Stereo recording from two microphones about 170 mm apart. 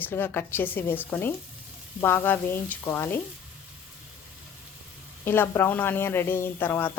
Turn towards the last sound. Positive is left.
turn(degrees=10)  # may be behind; listen again after turning